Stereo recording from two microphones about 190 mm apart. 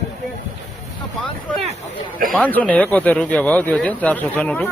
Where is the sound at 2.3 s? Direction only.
10° left (ahead or behind).